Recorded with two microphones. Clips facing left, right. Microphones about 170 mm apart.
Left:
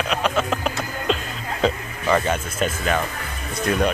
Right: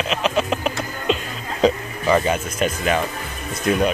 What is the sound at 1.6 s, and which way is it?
Speech, 10° right (ahead or behind).